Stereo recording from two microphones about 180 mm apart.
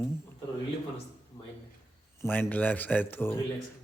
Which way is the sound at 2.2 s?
10° left (ahead or behind).